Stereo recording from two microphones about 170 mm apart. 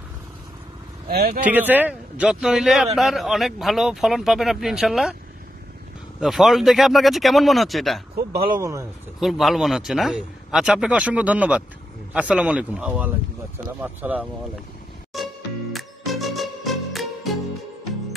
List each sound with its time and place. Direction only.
1.0 s speech: 60° right (ahead or behind)
1.4 s a man's voice: 10° right (ahead or behind)
6.1 s a man's voice: centre (ahead or behind)
8.5 s speech: 20° right (ahead or behind)
9.2 s a man's voice: centre (ahead or behind)
15.1 s music: centre (ahead or behind)